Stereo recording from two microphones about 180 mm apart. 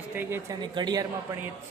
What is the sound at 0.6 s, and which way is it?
Speech, 25° right (ahead or behind).